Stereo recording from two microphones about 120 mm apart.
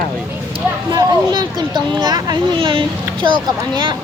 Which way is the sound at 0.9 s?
35° right (ahead or behind).